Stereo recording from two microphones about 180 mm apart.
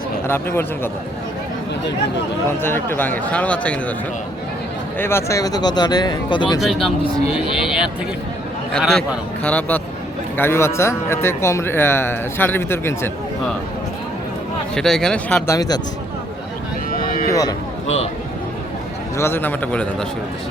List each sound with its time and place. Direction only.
0.3 s speech: 10° left (ahead or behind)
2.6 s speech: 10° left (ahead or behind)
4.9 s speech: 15° left (ahead or behind)
6.6 s speech: centre (ahead or behind)
14.8 s speech: 5° left (ahead or behind)
15.5 s speech: 20° left (ahead or behind)
16.9 s a sound: 55° left (ahead or behind)
19.1 s speech: 15° left (ahead or behind)